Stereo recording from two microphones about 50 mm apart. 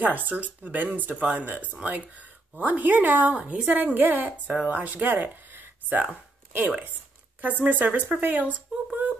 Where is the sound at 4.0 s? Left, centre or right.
Right.